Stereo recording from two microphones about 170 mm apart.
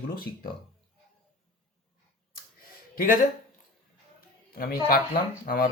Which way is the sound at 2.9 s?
55° left (ahead or behind).